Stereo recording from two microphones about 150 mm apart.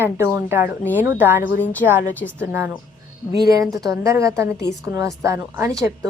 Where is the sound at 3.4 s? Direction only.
25° right (ahead or behind).